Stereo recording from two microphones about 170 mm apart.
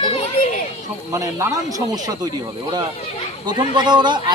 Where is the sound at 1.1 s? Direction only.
20° right (ahead or behind).